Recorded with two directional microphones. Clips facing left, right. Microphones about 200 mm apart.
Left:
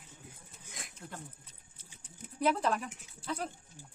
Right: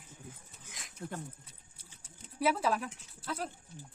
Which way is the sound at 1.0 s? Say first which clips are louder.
Right 7 dB; 40° right (ahead or behind).